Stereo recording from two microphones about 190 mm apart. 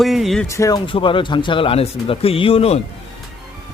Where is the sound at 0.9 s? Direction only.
25° left (ahead or behind).